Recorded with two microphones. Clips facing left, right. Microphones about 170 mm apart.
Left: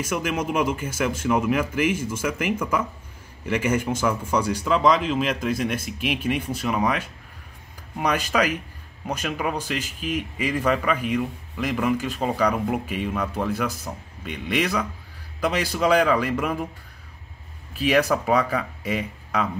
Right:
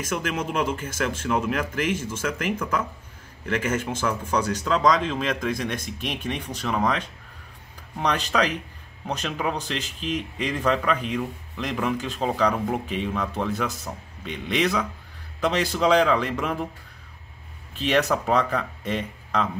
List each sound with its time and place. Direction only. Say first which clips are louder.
0.0 s a man's voice: left 2 dB; 10° left (ahead or behind)
17.7 s a man's voice: left 2 dB; 10° left (ahead or behind)